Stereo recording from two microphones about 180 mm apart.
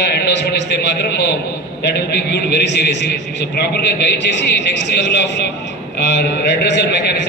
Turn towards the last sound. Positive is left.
turn(degrees=70)  # may be behind; listen again after turning